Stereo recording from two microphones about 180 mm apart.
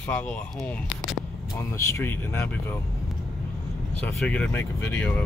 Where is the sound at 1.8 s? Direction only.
15° left (ahead or behind).